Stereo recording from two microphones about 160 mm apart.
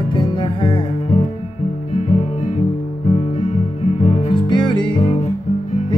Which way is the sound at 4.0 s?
35° left (ahead or behind).